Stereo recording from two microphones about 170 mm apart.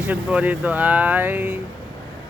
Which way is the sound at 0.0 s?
5° right (ahead or behind).